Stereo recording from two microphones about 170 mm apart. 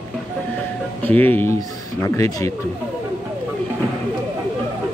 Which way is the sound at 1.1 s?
10° left (ahead or behind).